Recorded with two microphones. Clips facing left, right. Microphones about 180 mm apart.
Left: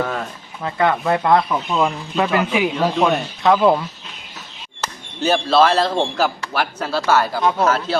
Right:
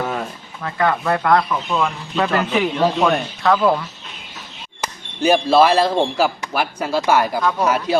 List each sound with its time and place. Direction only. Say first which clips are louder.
0.6 s speech: left 1 dB; 20° left (ahead or behind)
2.1 s speech: even; 10° left (ahead or behind)
3.4 s speech: left 2 dB; 20° left (ahead or behind)
4.8 s speech: right 2 dB; 10° right (ahead or behind)